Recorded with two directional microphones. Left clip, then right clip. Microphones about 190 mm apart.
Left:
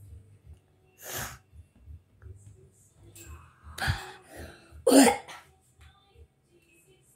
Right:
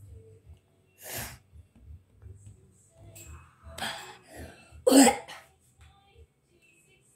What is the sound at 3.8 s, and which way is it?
Cough, 10° left (ahead or behind).